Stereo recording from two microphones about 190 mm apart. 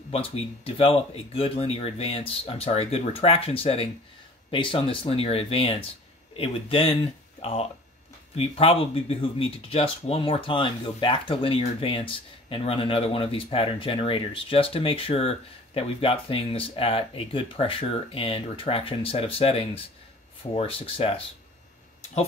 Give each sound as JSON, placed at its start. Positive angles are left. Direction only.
{"t": 0.1, "sound": "speech", "side_deg": 30}
{"t": 8.4, "sound": "speech", "side_deg": 30}